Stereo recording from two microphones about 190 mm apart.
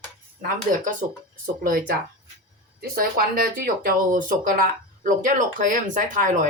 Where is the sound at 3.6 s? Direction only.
45° right (ahead or behind).